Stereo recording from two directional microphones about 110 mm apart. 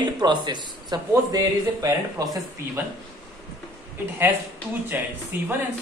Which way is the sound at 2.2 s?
35° right (ahead or behind).